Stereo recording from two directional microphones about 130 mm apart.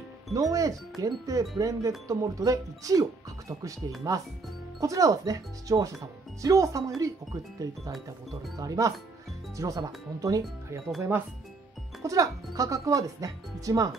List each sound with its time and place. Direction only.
0.3 s speech: 25° right (ahead or behind)
11.0 s speech: 15° right (ahead or behind)
12.0 s speech: 25° right (ahead or behind)